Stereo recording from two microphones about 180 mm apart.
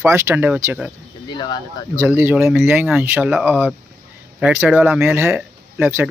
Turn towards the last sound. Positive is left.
turn(degrees=-10)  # may be behind; listen again after turning